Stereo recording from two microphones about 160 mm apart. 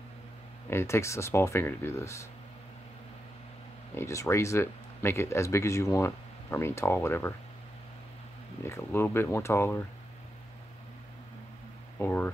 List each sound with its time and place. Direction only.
0.7 s speech: 15° left (ahead or behind)
3.9 s speech: 15° left (ahead or behind)
8.6 s speech: 15° left (ahead or behind)
12.0 s speech: 10° left (ahead or behind)